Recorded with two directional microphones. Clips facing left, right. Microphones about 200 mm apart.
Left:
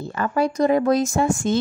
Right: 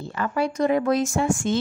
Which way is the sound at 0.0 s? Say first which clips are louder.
Left 3 dB; 45° left (ahead or behind).